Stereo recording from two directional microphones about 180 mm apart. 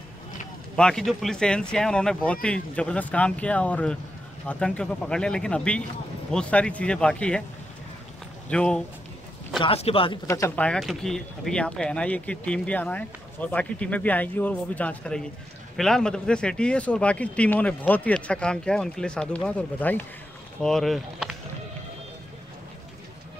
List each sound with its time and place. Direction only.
0.7 s speech: 5° left (ahead or behind)
8.5 s speech: 5° left (ahead or behind)
9.6 s speech: 30° left (ahead or behind)
10.2 s speech: 15° left (ahead or behind)
10.6 s speech: 5° left (ahead or behind)